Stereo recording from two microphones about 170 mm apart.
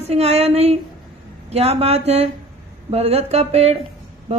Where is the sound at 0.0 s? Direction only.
40° right (ahead or behind).